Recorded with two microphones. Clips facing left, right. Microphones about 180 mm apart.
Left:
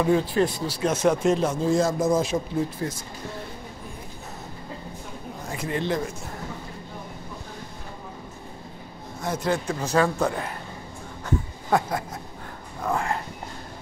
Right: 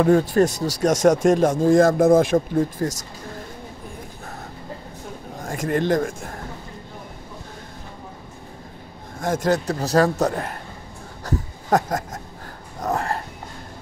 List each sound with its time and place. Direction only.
0.0 s speech: 50° right (ahead or behind)
5.4 s speech: 50° right (ahead or behind)
9.2 s speech: 45° right (ahead or behind)
12.8 s a sound: 40° right (ahead or behind)